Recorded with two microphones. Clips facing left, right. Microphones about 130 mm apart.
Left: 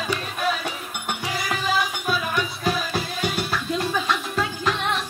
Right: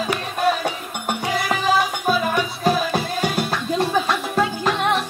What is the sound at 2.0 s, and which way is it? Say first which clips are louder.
Music: right 5 dB; 45° right (ahead or behind).